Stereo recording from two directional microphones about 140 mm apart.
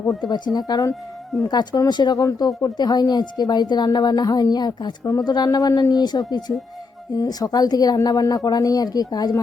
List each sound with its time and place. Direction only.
0.2 s speech: 30° left (ahead or behind)